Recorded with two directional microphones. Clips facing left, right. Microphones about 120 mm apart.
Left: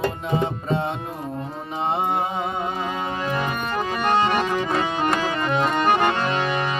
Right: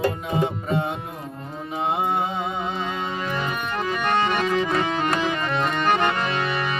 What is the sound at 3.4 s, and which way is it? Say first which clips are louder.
Accordion: left 2 dB; 15° left (ahead or behind).